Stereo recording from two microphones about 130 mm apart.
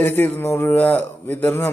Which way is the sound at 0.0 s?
15° left (ahead or behind).